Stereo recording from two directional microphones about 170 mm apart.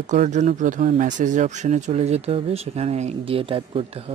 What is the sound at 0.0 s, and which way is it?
Speech, 45° right (ahead or behind).